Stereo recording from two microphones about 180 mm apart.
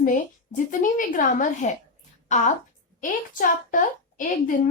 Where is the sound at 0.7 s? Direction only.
45° left (ahead or behind).